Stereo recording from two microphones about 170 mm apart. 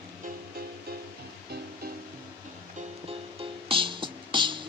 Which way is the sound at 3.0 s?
30° right (ahead or behind).